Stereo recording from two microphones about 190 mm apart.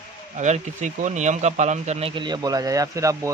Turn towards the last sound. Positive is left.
turn(degrees=-15)  # may be behind; listen again after turning